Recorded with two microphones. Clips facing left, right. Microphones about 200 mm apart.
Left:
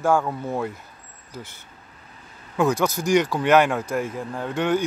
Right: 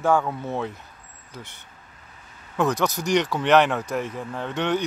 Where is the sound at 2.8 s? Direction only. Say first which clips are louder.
Left 2 dB; 5° left (ahead or behind).